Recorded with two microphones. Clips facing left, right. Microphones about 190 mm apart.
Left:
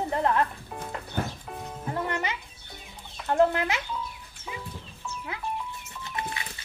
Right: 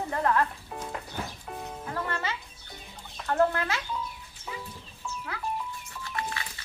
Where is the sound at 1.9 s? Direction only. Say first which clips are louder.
Left 3 dB; 15° left (ahead or behind).